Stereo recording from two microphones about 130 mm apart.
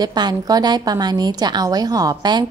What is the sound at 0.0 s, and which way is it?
A woman's voice, 30° right (ahead or behind).